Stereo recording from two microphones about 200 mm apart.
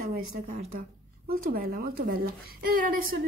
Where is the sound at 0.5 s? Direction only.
40° right (ahead or behind).